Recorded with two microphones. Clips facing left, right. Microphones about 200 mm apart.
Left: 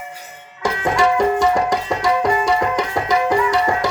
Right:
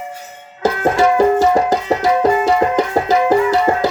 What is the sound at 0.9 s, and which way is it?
Music, 35° right (ahead or behind).